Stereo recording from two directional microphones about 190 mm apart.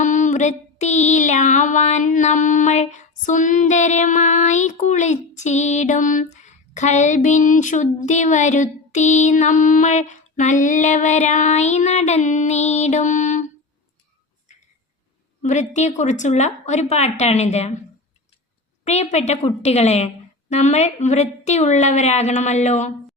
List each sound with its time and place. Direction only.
0.0 s female singing: 40° left (ahead or behind)
15.4 s female singing: 40° left (ahead or behind)
19.1 s female singing: 35° left (ahead or behind)